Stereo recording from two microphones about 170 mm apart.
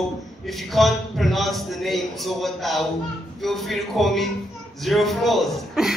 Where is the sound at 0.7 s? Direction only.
Centre (ahead or behind).